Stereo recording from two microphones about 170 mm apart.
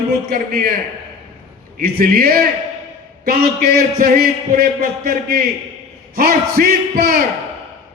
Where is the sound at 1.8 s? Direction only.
60° right (ahead or behind).